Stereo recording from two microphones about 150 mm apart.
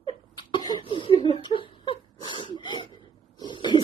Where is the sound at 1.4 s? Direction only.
35° left (ahead or behind).